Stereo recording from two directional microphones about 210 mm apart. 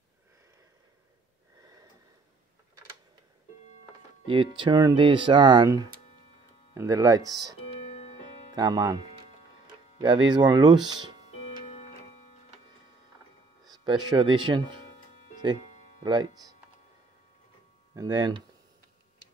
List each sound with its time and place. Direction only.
4.3 s speech: 25° right (ahead or behind)
8.5 s speech: 20° right (ahead or behind)
13.7 s speech: 20° right (ahead or behind)
16.0 s speech: 20° right (ahead or behind)
17.9 s speech: 15° right (ahead or behind)